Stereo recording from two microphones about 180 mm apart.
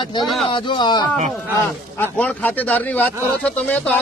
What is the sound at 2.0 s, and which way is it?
Speech, 10° left (ahead or behind).